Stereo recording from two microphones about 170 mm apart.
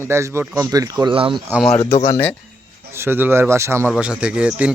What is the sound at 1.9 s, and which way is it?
Speech, 40° left (ahead or behind).